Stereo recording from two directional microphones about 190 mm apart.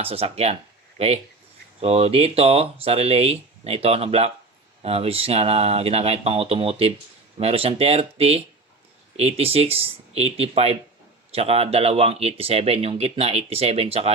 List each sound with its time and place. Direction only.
0.0 s speech: 30° right (ahead or behind)